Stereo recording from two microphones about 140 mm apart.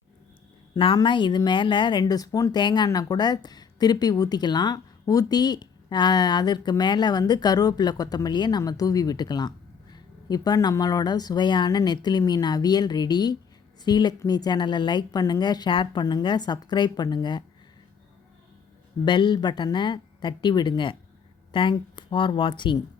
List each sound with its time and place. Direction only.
0.7 s a woman's voice: 40° left (ahead or behind)
19.0 s a woman's voice: 35° left (ahead or behind)